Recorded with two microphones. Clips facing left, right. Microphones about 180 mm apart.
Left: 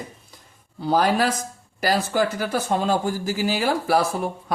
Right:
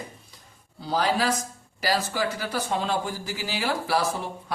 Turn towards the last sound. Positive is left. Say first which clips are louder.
# left 4 dB
turn(degrees=55)  # may be behind; listen again after turning